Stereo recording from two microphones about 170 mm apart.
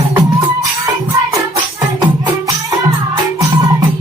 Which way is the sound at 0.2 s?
20° right (ahead or behind).